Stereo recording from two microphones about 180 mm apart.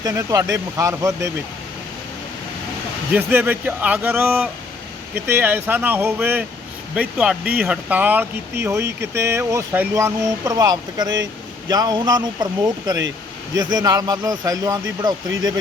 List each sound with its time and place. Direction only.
0.0 s speech: 20° right (ahead or behind)
3.1 s speech: 10° right (ahead or behind)